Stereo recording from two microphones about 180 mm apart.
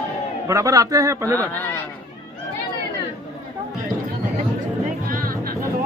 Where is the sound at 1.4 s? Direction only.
10° left (ahead or behind).